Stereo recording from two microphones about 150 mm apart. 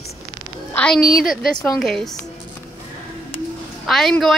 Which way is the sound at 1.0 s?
70° left (ahead or behind).